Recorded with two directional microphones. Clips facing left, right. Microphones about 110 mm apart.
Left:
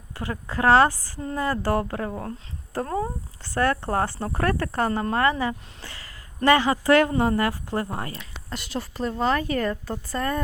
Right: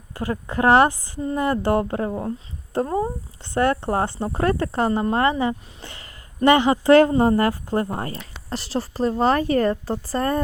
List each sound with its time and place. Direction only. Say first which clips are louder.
0.1 s speech: right 5 dB; 30° right (ahead or behind)